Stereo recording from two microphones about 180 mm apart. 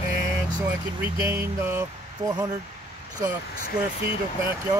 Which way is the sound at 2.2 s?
20° right (ahead or behind).